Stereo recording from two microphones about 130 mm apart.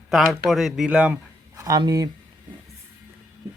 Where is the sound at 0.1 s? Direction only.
Centre (ahead or behind).